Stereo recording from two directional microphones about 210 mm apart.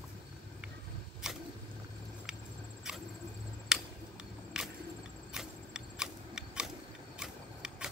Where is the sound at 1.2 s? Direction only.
5° right (ahead or behind).